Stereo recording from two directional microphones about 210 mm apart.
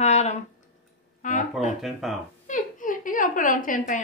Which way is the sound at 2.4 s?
40° left (ahead or behind).